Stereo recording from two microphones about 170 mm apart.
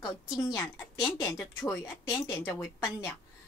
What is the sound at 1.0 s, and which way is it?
A woman's voice, 20° left (ahead or behind).